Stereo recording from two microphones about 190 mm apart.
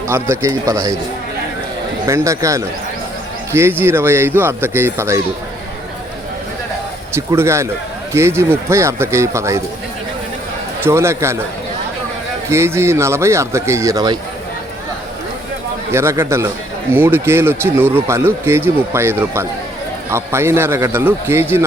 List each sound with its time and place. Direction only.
0.1 s speech: 15° right (ahead or behind)
2.0 s speech: 15° right (ahead or behind)
7.1 s speech: 15° right (ahead or behind)
10.8 s speech: 15° right (ahead or behind)
12.5 s speech: 15° right (ahead or behind)
15.9 s speech: 15° right (ahead or behind)